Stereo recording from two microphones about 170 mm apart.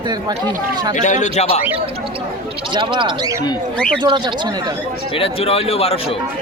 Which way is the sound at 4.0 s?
25° right (ahead or behind).